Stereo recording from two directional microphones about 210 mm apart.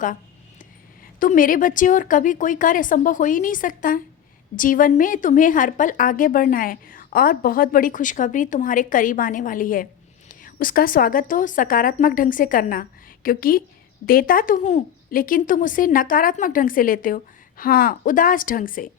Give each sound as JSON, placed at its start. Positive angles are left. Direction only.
{"t": 1.2, "sound": "a woman's voice", "side_deg": 40}